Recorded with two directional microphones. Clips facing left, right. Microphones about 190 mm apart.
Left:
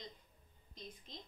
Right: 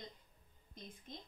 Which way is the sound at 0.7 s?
55° right (ahead or behind).